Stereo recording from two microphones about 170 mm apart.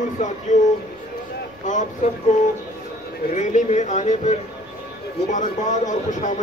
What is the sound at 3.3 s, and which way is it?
Speech, 45° left (ahead or behind).